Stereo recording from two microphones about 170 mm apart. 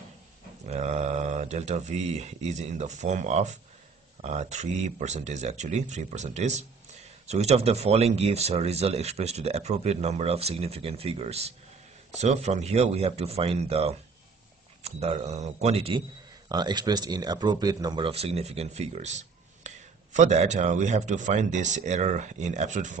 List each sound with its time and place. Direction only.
0.7 s speech: 40° right (ahead or behind)
16.4 s speech: 25° right (ahead or behind); by 22.9 s 45° right (ahead or behind)